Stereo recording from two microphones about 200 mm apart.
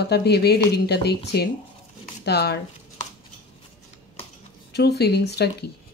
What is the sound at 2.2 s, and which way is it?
Speech, 55° left (ahead or behind).